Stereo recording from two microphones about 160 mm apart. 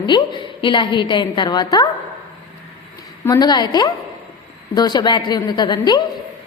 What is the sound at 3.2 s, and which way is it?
A woman's voice, 25° left (ahead or behind).